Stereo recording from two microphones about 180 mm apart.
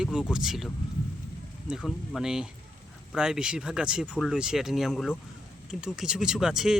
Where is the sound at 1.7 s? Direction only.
5° right (ahead or behind).